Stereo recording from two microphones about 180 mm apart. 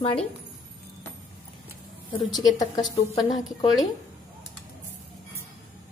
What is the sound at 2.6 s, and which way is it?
Speech, 20° left (ahead or behind).